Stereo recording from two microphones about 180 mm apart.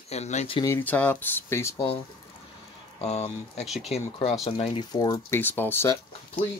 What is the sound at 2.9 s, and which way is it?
Speech, 35° left (ahead or behind).